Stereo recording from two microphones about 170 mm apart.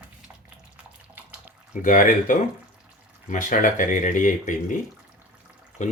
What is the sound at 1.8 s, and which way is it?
Speech, 50° left (ahead or behind).